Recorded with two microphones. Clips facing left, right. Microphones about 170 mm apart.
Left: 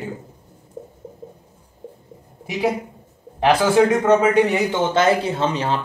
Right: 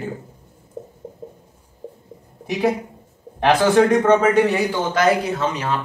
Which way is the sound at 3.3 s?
10° left (ahead or behind).